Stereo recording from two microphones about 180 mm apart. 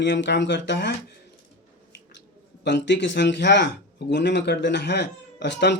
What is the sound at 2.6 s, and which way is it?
Speech, 75° left (ahead or behind).